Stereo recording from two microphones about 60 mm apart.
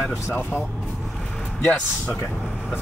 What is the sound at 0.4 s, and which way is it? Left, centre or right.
Speech, left.